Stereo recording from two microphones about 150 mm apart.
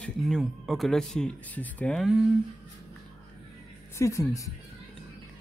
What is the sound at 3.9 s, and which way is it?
Speech, 20° left (ahead or behind).